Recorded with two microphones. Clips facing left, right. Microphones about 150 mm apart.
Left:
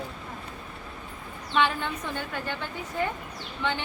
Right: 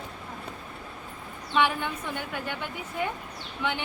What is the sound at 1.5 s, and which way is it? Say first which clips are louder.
A woman's voice: even; 15° right (ahead or behind).